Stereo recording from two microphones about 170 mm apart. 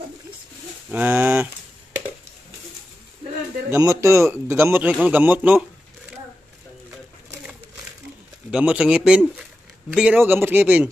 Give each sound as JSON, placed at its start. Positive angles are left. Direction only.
{"t": 0.8, "sound": "speech", "side_deg": -10}
{"t": 3.7, "sound": "speech", "side_deg": -15}
{"t": 8.5, "sound": "speech", "side_deg": -5}